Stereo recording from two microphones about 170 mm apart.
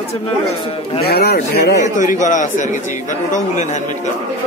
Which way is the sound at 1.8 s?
45° left (ahead or behind).